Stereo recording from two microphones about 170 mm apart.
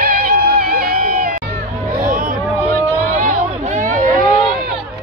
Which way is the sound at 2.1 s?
55° right (ahead or behind).